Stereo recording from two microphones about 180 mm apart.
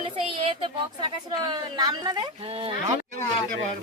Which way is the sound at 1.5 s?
20° right (ahead or behind).